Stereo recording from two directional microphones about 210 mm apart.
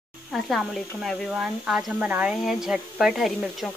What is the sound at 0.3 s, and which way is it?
Speech, centre (ahead or behind).